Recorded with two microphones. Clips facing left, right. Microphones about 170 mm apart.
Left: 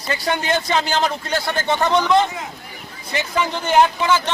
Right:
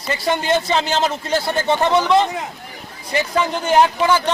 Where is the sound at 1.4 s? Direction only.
30° right (ahead or behind).